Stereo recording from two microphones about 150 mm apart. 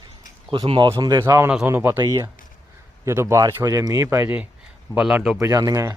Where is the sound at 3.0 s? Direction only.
20° right (ahead or behind); by 5.4 s centre (ahead or behind).